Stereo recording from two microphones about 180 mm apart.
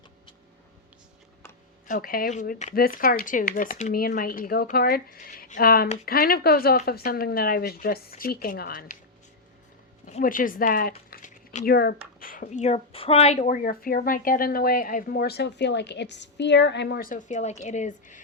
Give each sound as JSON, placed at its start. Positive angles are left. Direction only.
{"t": 1.9, "sound": "speech", "side_deg": 55}
{"t": 2.7, "sound": "speech", "side_deg": 55}
{"t": 10.1, "sound": "speech", "side_deg": 45}
{"t": 12.2, "sound": "speech", "side_deg": 50}